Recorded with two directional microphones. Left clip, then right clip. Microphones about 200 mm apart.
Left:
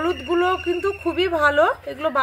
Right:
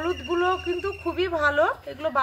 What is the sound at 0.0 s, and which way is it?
Speech, 45° left (ahead or behind).